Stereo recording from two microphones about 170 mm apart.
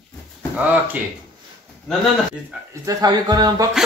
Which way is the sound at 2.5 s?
10° right (ahead or behind).